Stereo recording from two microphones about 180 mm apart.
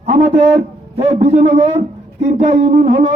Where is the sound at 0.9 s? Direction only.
35° right (ahead or behind).